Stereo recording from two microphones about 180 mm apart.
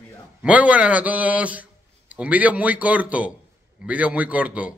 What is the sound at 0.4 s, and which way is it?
A man's voice, 10° right (ahead or behind).